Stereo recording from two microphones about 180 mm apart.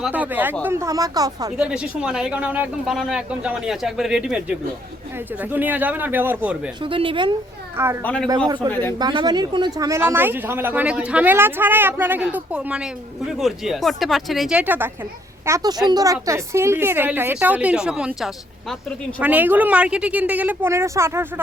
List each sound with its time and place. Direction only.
0.0 s speech: 10° right (ahead or behind)
1.5 s speech: 5° right (ahead or behind)
6.8 s speech: 30° right (ahead or behind)
8.0 s a man's voice: 5° left (ahead or behind)
9.0 s speech: 25° right (ahead or behind)